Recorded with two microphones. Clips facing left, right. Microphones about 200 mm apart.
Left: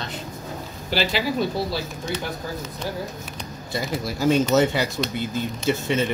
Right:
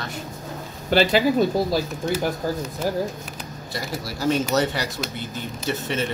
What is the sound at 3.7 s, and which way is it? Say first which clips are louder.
Speech: left 4 dB; 15° left (ahead or behind).